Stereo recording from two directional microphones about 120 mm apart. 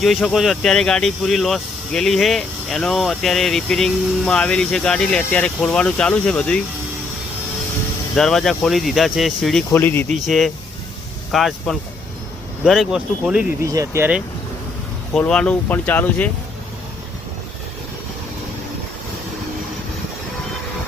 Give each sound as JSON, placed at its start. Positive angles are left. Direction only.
{"t": 0.0, "sound": "speech", "side_deg": 0}
{"t": 8.1, "sound": "speech", "side_deg": 5}
{"t": 9.7, "sound": "speech", "side_deg": 15}
{"t": 10.2, "sound": "speech", "side_deg": 0}
{"t": 13.6, "sound": "speech", "side_deg": -25}
{"t": 15.2, "sound": "speech", "side_deg": 10}